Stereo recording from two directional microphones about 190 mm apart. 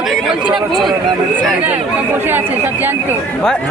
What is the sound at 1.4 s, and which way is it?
Speech, 10° right (ahead or behind).